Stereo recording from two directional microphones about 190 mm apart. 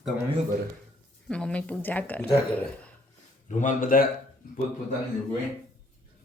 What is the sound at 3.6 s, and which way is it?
Speech, 45° left (ahead or behind).